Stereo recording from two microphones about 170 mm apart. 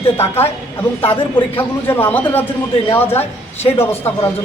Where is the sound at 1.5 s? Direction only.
10° left (ahead or behind).